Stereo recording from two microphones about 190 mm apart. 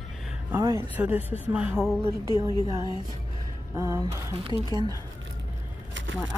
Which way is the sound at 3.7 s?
15° right (ahead or behind).